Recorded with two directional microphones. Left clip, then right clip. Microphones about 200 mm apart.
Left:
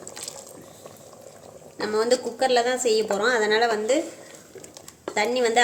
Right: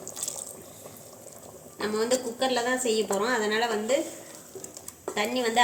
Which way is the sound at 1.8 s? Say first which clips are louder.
Left 4 dB; 45° left (ahead or behind).